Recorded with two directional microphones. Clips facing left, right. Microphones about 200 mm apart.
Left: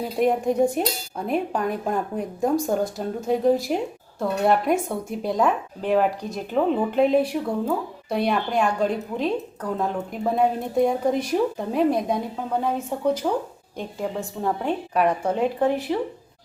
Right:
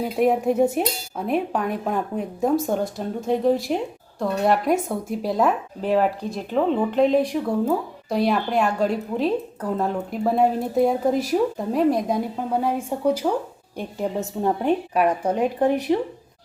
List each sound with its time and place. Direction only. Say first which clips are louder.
0.0 s dishes: right 2 dB; 5° right (ahead or behind)
14.4 s speech: right 4 dB; 15° right (ahead or behind)